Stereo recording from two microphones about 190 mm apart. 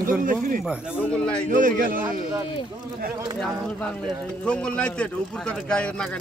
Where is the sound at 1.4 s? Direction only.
45° right (ahead or behind).